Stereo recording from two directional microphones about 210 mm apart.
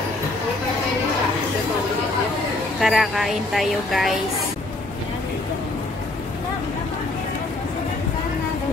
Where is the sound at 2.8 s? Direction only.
Centre (ahead or behind).